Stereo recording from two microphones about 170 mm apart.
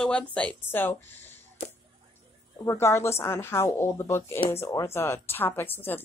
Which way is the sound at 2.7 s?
15° left (ahead or behind).